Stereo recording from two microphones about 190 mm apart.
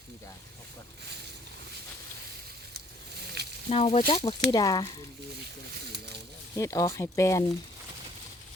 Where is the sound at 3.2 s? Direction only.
60° right (ahead or behind).